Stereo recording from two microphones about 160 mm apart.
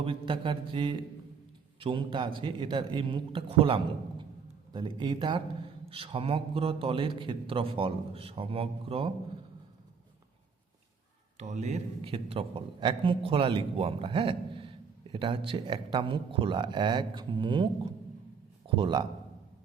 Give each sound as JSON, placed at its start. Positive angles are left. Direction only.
{"t": 0.0, "sound": "a man's voice", "side_deg": -35}
{"t": 11.3, "sound": "a man's voice", "side_deg": -45}